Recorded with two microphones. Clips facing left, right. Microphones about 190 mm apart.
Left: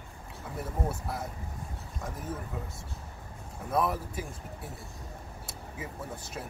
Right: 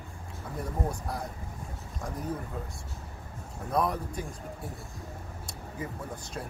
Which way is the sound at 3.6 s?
5° left (ahead or behind).